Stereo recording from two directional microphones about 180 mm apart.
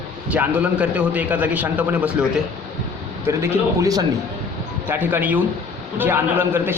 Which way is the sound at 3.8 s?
20° right (ahead or behind).